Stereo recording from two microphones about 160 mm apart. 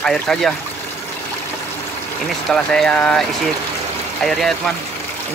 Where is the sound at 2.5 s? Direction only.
5° left (ahead or behind).